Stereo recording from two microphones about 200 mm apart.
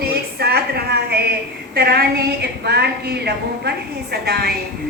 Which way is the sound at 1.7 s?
50° right (ahead or behind).